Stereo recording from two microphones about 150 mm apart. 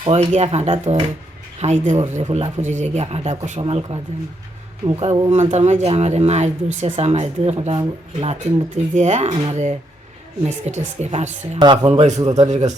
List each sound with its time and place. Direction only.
0.0 s speech: 40° right (ahead or behind)
3.6 s speech: 35° right (ahead or behind)
5.3 s speech: 50° right (ahead or behind)
11.6 s speech: 30° right (ahead or behind)
11.9 s speech: 45° right (ahead or behind)